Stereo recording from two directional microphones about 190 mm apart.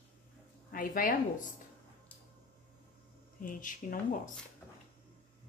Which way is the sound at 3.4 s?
45° left (ahead or behind).